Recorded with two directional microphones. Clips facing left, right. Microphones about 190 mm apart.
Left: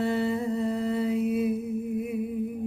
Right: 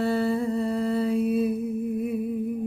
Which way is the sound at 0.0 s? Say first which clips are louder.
Right 2 dB; 20° left (ahead or behind).